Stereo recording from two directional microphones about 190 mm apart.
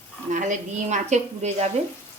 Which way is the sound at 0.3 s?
40° right (ahead or behind).